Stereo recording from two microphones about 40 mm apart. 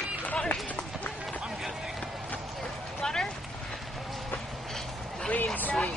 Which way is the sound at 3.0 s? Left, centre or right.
Centre.